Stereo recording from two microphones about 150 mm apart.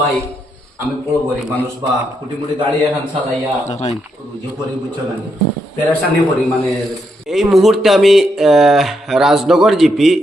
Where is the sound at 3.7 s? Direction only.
45° left (ahead or behind).